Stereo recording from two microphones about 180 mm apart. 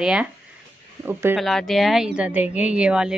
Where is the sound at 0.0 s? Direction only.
5° right (ahead or behind).